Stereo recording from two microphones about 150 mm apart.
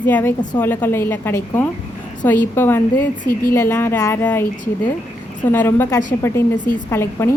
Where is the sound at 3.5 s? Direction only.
20° left (ahead or behind).